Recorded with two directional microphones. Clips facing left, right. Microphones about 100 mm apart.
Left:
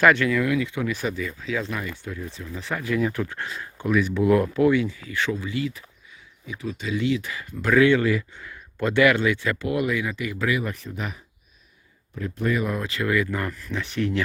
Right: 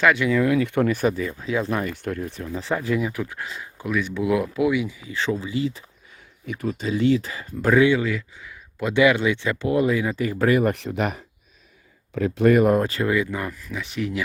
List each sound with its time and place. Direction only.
0.3 s speech: 30° right (ahead or behind)
0.6 s speech: 50° right (ahead or behind); by 1.6 s 30° right (ahead or behind)
1.8 s speech: 60° right (ahead or behind)
2.5 s speech: 30° right (ahead or behind)
3.0 s speech: 10° right (ahead or behind)
5.1 s speech: 30° right (ahead or behind)
6.4 s speech: 50° right (ahead or behind); by 7.9 s 30° right (ahead or behind)
8.0 s speech: centre (ahead or behind)
8.9 s speech: 15° right (ahead or behind); by 10.3 s 35° right (ahead or behind)
10.3 s speech: 50° right (ahead or behind); by 11.2 s 70° right (ahead or behind)
12.1 s speech: 80° right; by 13.0 s 45° right (ahead or behind)
13.0 s speech: 20° right (ahead or behind); by 14.2 s 5° right (ahead or behind)